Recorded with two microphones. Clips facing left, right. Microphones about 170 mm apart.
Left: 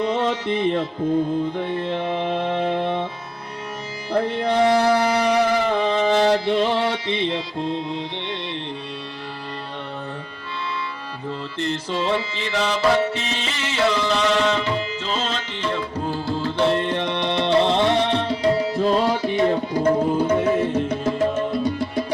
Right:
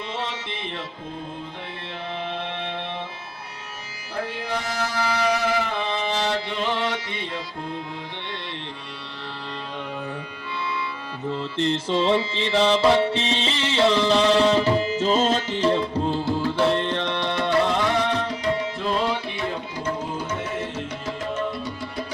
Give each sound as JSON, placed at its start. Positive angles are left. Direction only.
{"t": 0.0, "sound": "music", "side_deg": 50}
{"t": 4.1, "sound": "music", "side_deg": 60}
{"t": 5.8, "sound": "music", "side_deg": 45}
{"t": 11.3, "sound": "music", "side_deg": -25}
{"t": 16.0, "sound": "music", "side_deg": -20}
{"t": 16.6, "sound": "music", "side_deg": 5}